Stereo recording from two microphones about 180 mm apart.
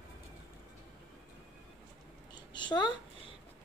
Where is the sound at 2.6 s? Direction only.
25° left (ahead or behind).